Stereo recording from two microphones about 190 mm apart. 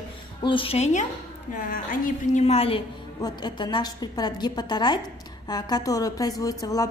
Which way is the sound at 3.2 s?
20° left (ahead or behind).